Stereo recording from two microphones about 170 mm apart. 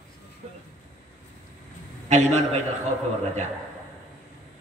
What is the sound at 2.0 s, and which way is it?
Speech, 45° right (ahead or behind).